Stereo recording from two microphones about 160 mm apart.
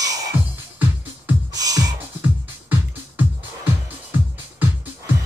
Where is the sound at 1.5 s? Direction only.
20° right (ahead or behind).